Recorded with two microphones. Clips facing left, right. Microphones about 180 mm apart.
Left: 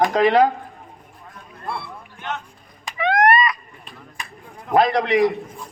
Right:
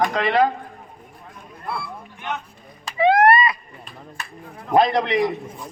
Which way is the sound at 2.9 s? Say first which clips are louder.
Right 2 dB; 30° right (ahead or behind).